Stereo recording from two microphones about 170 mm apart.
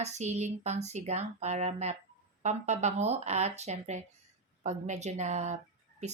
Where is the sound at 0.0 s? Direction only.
40° right (ahead or behind).